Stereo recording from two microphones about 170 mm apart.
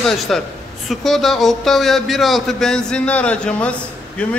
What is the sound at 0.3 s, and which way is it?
A man's voice, centre (ahead or behind).